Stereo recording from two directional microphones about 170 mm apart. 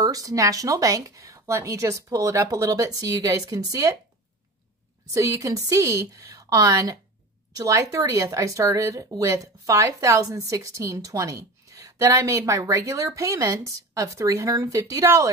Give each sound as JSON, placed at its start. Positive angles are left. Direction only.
{"t": 0.0, "sound": "speech", "side_deg": -20}
{"t": 5.1, "sound": "speech", "side_deg": -20}